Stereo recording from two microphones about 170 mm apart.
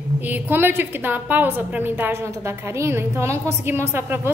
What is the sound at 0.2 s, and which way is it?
A woman's voice, 10° right (ahead or behind).